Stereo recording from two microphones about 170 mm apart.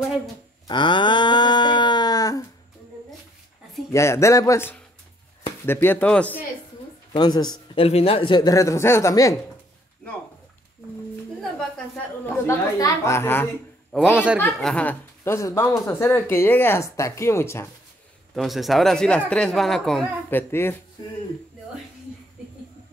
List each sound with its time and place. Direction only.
0.7 s livestock: 30° left (ahead or behind)
3.9 s speech: 15° left (ahead or behind)
7.1 s speech: 25° left (ahead or behind)
12.4 s speech: 20° left (ahead or behind)
13.9 s a man's voice: 5° right (ahead or behind)
14.6 s speech: 5° left (ahead or behind)
18.3 s speech: centre (ahead or behind)
20.2 s speech: 15° left (ahead or behind)